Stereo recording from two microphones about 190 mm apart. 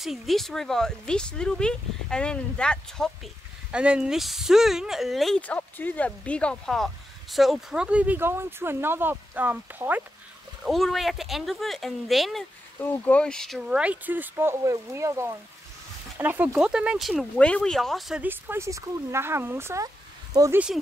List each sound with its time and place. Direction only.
0.0 s speech: centre (ahead or behind)
3.7 s speech: 5° right (ahead or behind)
10.6 s speech: centre (ahead or behind); by 20.6 s 15° right (ahead or behind)